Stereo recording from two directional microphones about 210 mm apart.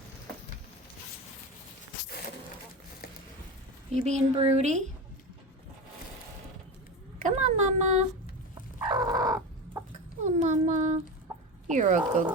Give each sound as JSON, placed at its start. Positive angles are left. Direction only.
{"t": 3.9, "sound": "speech", "side_deg": -35}
{"t": 7.3, "sound": "a sound", "side_deg": -35}
{"t": 9.0, "sound": "chicken", "side_deg": -20}
{"t": 10.2, "sound": "child singing", "side_deg": -35}
{"t": 11.7, "sound": "speech", "side_deg": -35}